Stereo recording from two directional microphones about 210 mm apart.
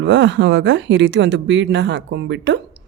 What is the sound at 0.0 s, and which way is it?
Speech, 55° right (ahead or behind).